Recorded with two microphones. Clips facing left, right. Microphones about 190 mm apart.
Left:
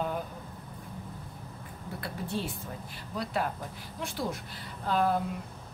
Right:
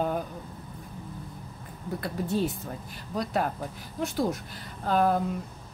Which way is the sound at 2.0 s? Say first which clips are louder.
Right 7 dB; 45° right (ahead or behind).